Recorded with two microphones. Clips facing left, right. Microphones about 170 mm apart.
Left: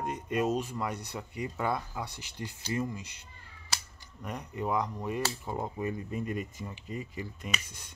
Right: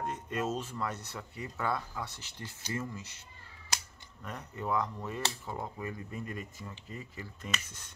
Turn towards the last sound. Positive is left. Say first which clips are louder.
# left 2 dB
turn(degrees=15)  # may be behind; listen again after turning